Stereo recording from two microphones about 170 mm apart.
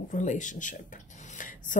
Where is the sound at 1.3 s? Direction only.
50° left (ahead or behind).